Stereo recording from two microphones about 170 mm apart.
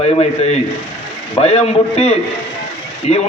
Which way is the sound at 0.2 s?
35° left (ahead or behind).